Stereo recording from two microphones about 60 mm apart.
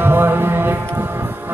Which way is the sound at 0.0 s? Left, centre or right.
Right.